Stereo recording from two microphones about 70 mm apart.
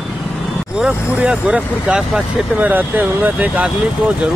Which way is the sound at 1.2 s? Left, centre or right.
Centre.